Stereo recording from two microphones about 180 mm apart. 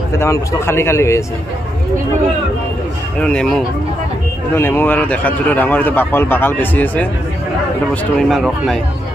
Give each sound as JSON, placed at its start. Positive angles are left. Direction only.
{"t": 0.2, "sound": "a man's voice", "side_deg": 15}
{"t": 3.2, "sound": "a man's voice", "side_deg": 5}